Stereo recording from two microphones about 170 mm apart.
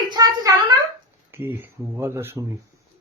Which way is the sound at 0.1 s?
20° right (ahead or behind).